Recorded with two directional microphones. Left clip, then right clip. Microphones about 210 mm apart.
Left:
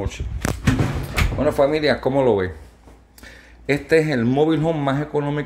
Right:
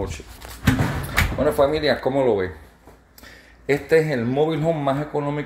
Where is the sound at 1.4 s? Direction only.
15° left (ahead or behind).